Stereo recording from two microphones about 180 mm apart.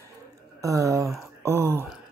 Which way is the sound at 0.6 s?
15° right (ahead or behind).